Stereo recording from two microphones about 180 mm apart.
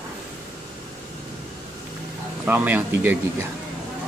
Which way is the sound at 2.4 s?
10° right (ahead or behind).